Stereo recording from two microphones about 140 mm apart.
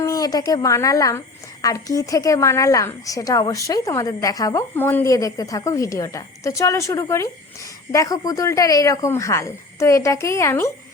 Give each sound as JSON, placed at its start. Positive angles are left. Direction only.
{"t": 0.0, "sound": "a woman's voice", "side_deg": 25}